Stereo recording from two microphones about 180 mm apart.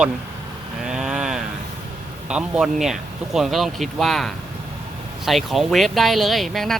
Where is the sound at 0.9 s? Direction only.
5° right (ahead or behind).